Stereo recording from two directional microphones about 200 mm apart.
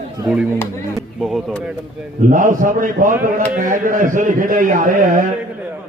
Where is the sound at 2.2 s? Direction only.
40° right (ahead or behind).